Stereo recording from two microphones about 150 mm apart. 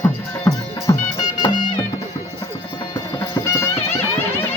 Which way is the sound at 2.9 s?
20° left (ahead or behind).